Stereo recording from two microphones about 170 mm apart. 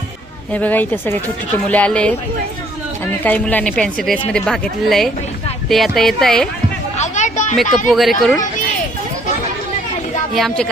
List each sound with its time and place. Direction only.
0.5 s speech: 10° left (ahead or behind)
3.2 s speech: 10° left (ahead or behind)
7.0 s a sound: 45° left (ahead or behind)
7.5 s speech: centre (ahead or behind)
10.3 s speech: 5° left (ahead or behind)